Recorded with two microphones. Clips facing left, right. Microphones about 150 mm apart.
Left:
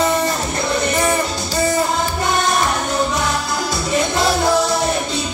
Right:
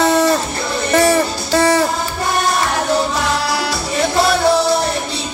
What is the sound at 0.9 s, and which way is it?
Music, 90° right.